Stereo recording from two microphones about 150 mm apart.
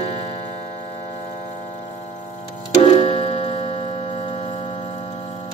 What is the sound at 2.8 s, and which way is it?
Tick-tock, 35° left (ahead or behind).